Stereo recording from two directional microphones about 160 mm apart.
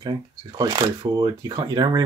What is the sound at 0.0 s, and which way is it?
Speech, 25° right (ahead or behind).